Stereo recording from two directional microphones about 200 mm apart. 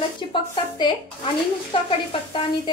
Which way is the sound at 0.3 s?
20° left (ahead or behind).